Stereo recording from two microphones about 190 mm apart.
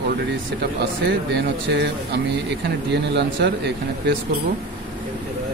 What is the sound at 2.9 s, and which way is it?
Speech, 65° right (ahead or behind).